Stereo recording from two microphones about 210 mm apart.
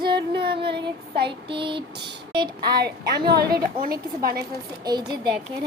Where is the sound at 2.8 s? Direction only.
50° right (ahead or behind).